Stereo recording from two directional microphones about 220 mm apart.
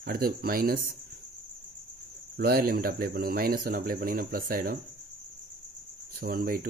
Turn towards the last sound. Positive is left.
turn(degrees=-40)  # may be behind; listen again after turning